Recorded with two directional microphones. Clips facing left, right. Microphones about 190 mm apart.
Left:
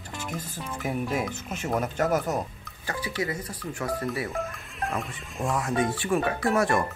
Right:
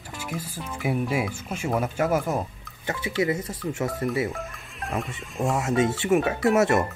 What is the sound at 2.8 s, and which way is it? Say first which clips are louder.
Speech: right 5 dB; 25° right (ahead or behind).